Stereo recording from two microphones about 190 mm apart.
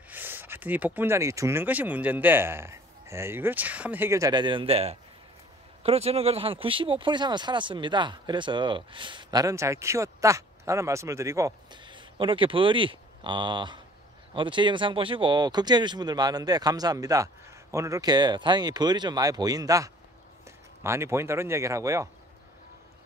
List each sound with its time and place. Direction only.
0.1 s speech: 10° right (ahead or behind)